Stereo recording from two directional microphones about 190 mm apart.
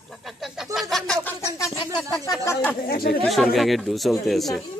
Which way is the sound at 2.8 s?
55° left (ahead or behind).